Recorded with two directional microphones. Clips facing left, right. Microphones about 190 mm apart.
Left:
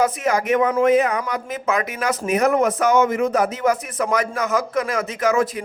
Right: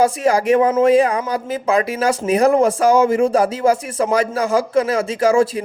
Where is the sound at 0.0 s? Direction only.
35° right (ahead or behind).